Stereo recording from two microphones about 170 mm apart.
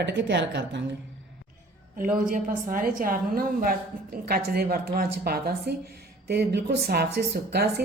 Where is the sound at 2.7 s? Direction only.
55° right (ahead or behind).